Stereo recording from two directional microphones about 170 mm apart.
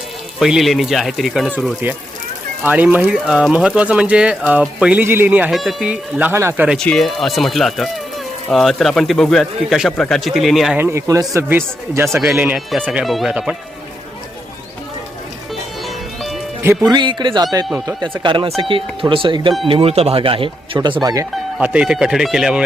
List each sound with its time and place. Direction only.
0.3 s speech: centre (ahead or behind)
6.7 s speech: 5° left (ahead or behind)
10.8 s speech: 15° right (ahead or behind)
16.9 s speech: 25° right (ahead or behind)
21.6 s speech: 5° right (ahead or behind)